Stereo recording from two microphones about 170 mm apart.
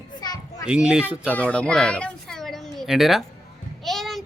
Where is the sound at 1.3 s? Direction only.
5° left (ahead or behind).